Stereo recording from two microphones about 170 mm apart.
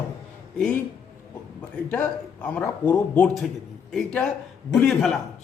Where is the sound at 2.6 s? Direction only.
20° left (ahead or behind).